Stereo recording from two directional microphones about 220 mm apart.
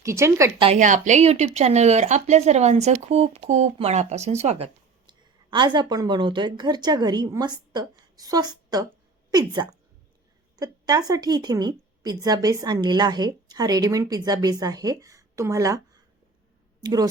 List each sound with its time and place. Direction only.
0.0 s a woman's voice: 15° right (ahead or behind)
0.6 s a woman's voice: 30° right (ahead or behind); by 15.8 s 15° right (ahead or behind)
16.8 s a woman's voice: 15° right (ahead or behind)